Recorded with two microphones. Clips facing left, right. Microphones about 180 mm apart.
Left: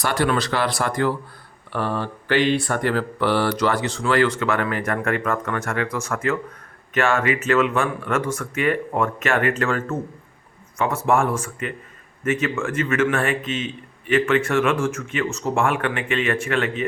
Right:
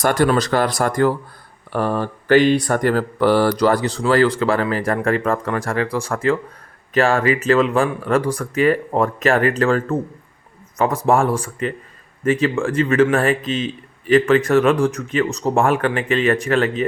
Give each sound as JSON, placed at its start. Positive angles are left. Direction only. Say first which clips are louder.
{"t": 0.0, "sound": "speech", "louder": "right 5 dB", "side_deg": -45}